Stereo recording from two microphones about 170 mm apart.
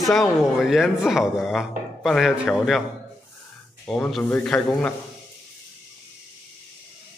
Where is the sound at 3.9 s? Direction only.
Centre (ahead or behind).